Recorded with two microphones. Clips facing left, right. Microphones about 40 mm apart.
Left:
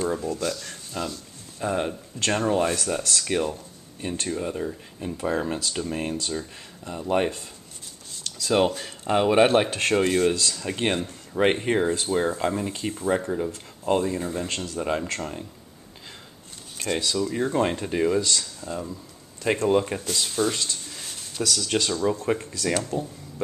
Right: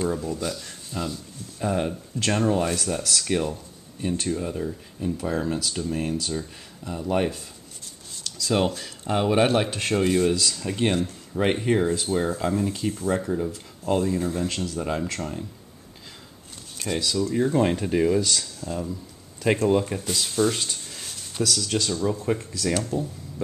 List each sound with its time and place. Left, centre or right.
0.3 s speech: centre
0.7 s a sound: centre
1.6 s speech: centre; by 6.3 s left
6.3 s speech: centre
10.0 s speech: centre
16.7 s speech: centre
19.7 s speech: centre
20.1 s speech: centre
21.6 s speech: left
22.2 s speech: centre